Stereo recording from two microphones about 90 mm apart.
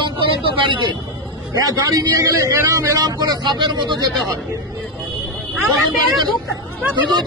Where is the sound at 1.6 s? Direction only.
45° right (ahead or behind).